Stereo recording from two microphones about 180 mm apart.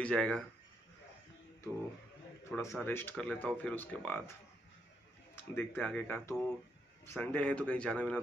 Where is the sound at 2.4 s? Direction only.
15° left (ahead or behind).